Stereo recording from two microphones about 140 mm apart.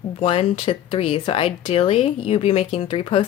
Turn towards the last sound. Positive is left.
turn(degrees=40)  # may be behind; listen again after turning